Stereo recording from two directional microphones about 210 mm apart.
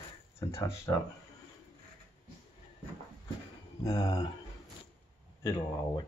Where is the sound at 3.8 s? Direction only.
15° left (ahead or behind).